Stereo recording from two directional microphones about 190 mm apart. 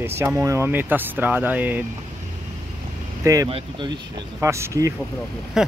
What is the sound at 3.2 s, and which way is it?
Speech, 20° right (ahead or behind).